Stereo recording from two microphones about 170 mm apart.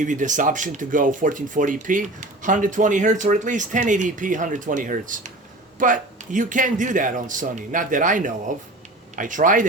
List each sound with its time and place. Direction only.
0.0 s speech: 50° right (ahead or behind)